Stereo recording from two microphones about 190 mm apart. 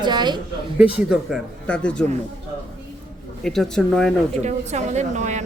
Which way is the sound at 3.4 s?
Centre (ahead or behind).